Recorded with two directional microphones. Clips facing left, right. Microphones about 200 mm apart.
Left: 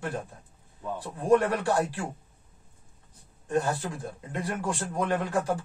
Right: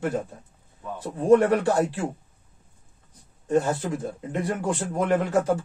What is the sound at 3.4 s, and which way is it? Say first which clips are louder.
Speech: right 5 dB; 20° right (ahead or behind).